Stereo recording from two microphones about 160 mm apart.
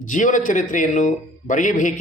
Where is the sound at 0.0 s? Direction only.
55° left (ahead or behind).